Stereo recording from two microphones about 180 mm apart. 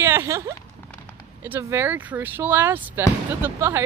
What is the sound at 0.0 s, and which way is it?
Speech, 15° right (ahead or behind).